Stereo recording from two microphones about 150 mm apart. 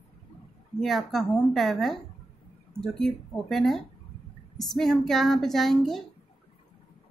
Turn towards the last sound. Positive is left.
turn(degrees=0)  # may be behind; listen again after turning